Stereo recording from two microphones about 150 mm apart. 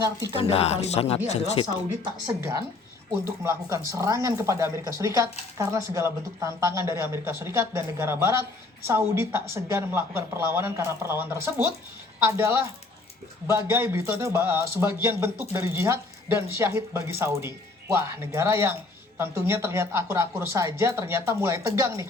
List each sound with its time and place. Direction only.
0.5 s speech: 45° left (ahead or behind)
3.2 s speech: 20° right (ahead or behind)